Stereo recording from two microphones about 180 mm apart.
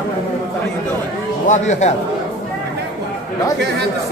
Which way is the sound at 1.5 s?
40° left (ahead or behind).